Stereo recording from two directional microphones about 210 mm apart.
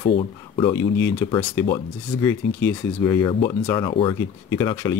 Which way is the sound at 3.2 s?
20° left (ahead or behind).